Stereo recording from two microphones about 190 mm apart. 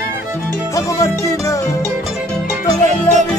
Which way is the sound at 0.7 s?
15° left (ahead or behind).